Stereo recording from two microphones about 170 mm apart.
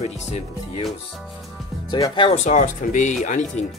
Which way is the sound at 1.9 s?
25° left (ahead or behind).